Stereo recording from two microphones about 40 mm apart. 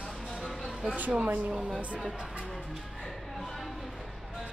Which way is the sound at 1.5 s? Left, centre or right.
Centre.